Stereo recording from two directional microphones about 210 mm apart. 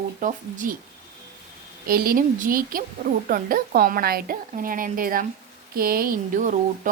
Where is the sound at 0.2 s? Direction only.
40° right (ahead or behind).